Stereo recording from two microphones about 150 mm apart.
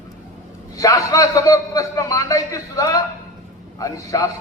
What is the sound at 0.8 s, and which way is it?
A man's voice, 25° left (ahead or behind).